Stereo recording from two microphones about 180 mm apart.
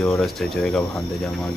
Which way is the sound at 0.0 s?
Centre (ahead or behind).